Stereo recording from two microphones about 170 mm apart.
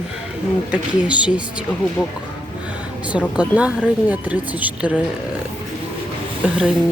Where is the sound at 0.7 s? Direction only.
5° right (ahead or behind).